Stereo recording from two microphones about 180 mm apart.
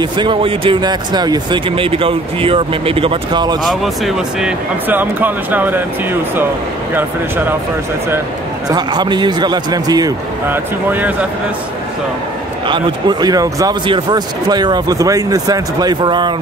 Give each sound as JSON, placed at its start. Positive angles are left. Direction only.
{"t": 0.0, "sound": "speech", "side_deg": -25}
{"t": 3.6, "sound": "speech", "side_deg": 0}
{"t": 7.0, "sound": "speech", "side_deg": -10}
{"t": 8.6, "sound": "speech", "side_deg": -25}
{"t": 12.6, "sound": "speech", "side_deg": -25}